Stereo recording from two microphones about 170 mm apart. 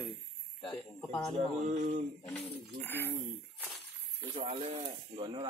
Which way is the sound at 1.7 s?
45° right (ahead or behind).